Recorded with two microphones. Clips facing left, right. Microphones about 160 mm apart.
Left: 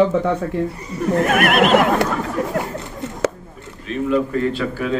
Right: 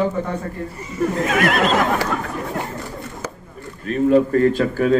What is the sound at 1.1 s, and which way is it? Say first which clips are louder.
Speech: left 5 dB; 60° left (ahead or behind).